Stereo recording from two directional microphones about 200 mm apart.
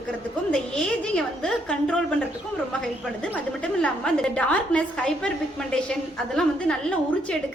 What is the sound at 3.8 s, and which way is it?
A woman's voice, 5° left (ahead or behind).